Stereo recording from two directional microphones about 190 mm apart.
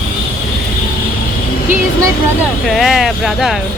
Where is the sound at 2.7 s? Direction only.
Centre (ahead or behind).